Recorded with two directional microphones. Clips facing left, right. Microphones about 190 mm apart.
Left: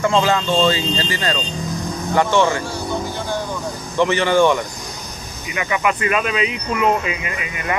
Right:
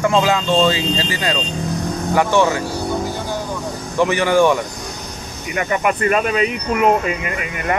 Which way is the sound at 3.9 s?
10° right (ahead or behind).